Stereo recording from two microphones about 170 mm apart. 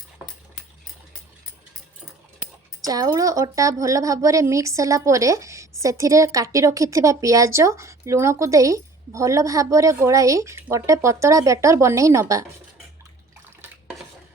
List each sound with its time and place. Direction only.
2.8 s speech: 20° right (ahead or behind)